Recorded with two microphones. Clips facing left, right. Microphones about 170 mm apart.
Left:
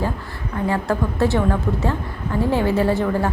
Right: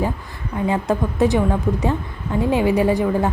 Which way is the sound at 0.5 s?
20° right (ahead or behind).